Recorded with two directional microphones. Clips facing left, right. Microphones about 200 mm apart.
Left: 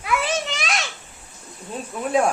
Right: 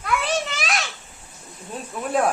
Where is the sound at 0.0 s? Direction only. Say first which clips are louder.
Even; centre (ahead or behind).